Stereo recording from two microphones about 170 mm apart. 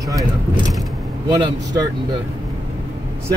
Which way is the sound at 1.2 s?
25° right (ahead or behind).